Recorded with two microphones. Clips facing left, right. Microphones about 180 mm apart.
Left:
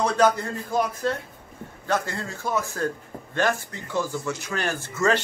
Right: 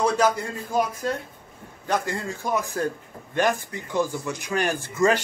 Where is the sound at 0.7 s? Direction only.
10° right (ahead or behind).